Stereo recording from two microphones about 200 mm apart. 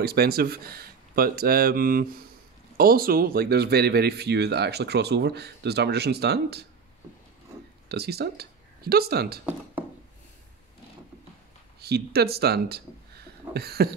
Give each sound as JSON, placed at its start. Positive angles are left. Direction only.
{"t": 0.0, "sound": "speech", "side_deg": -50}
{"t": 7.9, "sound": "speech", "side_deg": -55}
{"t": 11.8, "sound": "speech", "side_deg": -55}